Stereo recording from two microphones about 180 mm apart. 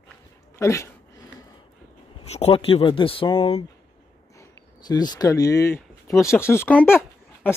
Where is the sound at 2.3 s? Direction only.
35° left (ahead or behind).